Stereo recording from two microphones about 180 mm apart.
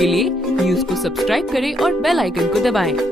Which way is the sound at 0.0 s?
Centre (ahead or behind).